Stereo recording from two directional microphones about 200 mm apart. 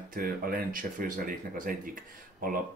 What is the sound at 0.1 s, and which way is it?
Speech, 45° right (ahead or behind).